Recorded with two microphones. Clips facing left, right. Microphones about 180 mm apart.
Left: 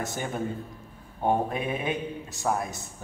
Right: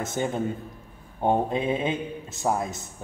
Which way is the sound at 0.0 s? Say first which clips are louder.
Right 4 dB; 25° right (ahead or behind).